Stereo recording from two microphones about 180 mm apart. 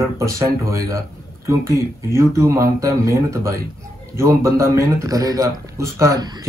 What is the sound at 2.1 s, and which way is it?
Speech, 15° right (ahead or behind).